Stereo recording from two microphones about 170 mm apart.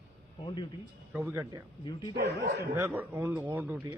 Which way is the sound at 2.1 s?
70° right (ahead or behind).